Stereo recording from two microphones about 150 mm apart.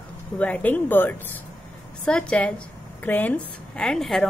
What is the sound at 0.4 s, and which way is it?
Speech, 10° left (ahead or behind).